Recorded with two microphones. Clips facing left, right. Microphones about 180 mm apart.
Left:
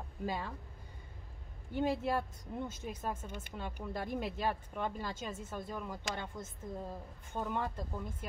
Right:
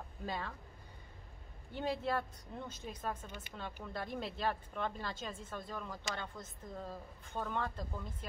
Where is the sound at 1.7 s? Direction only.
10° left (ahead or behind).